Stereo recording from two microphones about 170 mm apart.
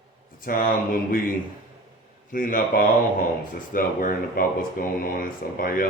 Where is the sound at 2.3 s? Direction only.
55° left (ahead or behind).